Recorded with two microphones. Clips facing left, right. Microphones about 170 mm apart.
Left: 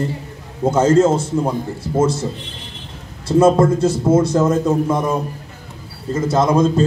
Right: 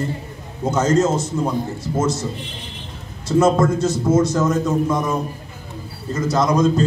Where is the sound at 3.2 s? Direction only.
30° left (ahead or behind).